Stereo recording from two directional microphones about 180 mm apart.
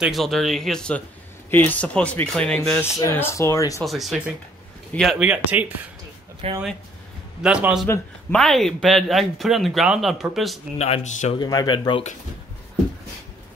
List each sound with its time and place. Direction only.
0.0 s speech: centre (ahead or behind); by 3.8 s 15° left (ahead or behind)
3.8 s speech: centre (ahead or behind)
6.4 s speech: 35° right (ahead or behind)
7.4 s speech: 5° right (ahead or behind)
10.8 s speech: 40° left (ahead or behind)
11.3 s speech: 25° left (ahead or behind)